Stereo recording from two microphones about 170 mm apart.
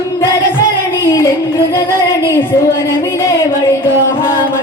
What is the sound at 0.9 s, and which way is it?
Music, 15° left (ahead or behind).